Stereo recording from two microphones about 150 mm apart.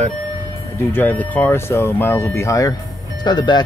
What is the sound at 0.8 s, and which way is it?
Speech, 15° left (ahead or behind).